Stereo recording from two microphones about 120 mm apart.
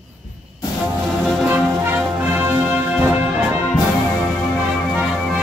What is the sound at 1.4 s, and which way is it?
Music, 15° right (ahead or behind).